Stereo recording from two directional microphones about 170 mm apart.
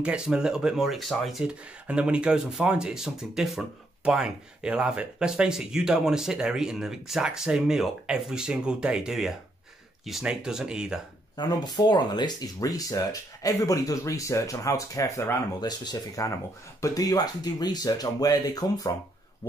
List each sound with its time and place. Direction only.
0.0 s speech: 5° right (ahead or behind)
11.3 s speech: 25° left (ahead or behind)